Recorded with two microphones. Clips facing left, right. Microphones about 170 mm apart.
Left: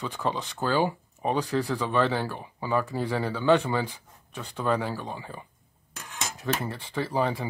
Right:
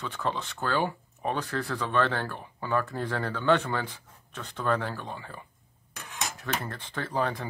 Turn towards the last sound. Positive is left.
turn(degrees=10)  # may be behind; listen again after turning